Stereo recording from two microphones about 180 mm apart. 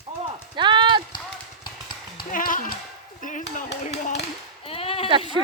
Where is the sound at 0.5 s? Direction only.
25° right (ahead or behind).